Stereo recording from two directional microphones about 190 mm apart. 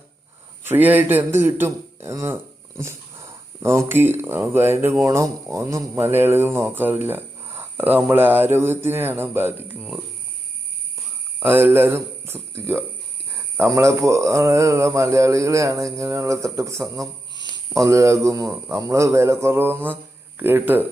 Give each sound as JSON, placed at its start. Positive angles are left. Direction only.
{"t": 0.6, "sound": "a man's voice", "side_deg": -10}
{"t": 11.3, "sound": "speech", "side_deg": -10}